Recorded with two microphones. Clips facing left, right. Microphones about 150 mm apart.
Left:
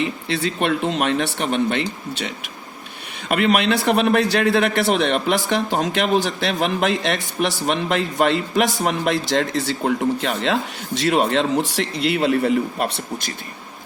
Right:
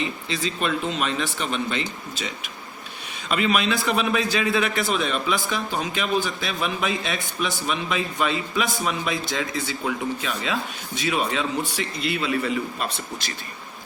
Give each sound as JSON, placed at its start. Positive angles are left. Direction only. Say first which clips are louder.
{"t": 0.0, "sound": "a man's voice", "louder": "left 5 dB", "side_deg": 65}